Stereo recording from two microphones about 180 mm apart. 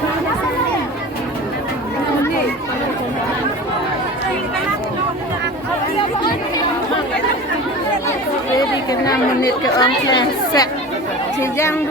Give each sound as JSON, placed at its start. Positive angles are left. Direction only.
{"t": 8.5, "sound": "chatter", "side_deg": 20}
{"t": 9.7, "sound": "speech", "side_deg": 25}